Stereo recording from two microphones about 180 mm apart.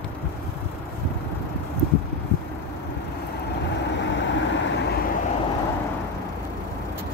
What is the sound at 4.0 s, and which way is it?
Vehicle, 90° left.